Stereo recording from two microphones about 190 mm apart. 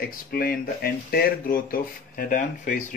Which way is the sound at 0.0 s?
50° left (ahead or behind).